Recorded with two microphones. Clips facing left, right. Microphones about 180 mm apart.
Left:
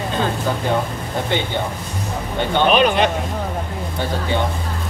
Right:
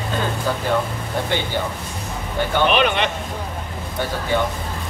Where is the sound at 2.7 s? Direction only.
40° left (ahead or behind).